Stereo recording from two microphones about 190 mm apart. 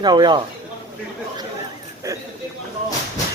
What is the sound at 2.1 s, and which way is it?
Speech, 15° right (ahead or behind).